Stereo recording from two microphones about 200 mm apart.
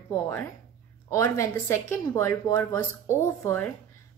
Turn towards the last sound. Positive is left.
turn(degrees=10)  # may be behind; listen again after turning